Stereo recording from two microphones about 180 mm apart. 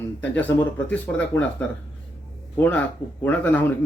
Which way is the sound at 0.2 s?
10° left (ahead or behind).